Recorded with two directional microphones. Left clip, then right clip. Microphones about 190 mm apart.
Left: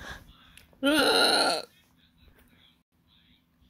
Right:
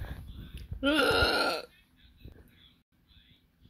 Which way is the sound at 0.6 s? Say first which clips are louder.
Left 3 dB; 45° left (ahead or behind).